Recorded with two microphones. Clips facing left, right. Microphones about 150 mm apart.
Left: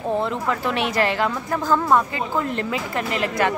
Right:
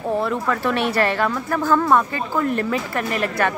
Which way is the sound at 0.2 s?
20° left (ahead or behind).